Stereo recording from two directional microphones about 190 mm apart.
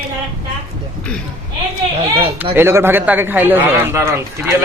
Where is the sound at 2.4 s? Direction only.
10° right (ahead or behind).